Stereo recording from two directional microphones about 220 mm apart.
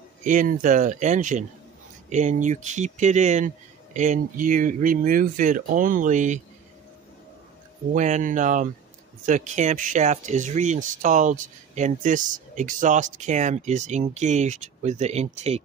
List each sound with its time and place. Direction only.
0.2 s speech: 35° right (ahead or behind)
7.9 s speech: 35° right (ahead or behind)